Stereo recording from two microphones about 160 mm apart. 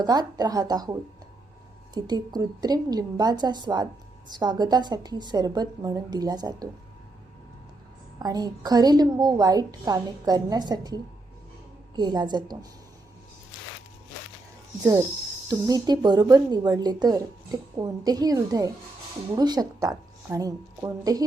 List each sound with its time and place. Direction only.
0.0 s speech: 25° right (ahead or behind)
8.2 s speech: 25° right (ahead or behind)
15.4 s a woman's voice: 25° right (ahead or behind)